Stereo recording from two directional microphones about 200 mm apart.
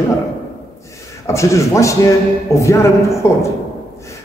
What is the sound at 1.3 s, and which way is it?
A man's voice, 15° left (ahead or behind).